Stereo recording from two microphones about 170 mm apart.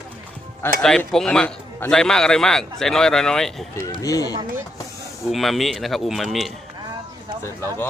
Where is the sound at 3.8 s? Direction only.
20° left (ahead or behind).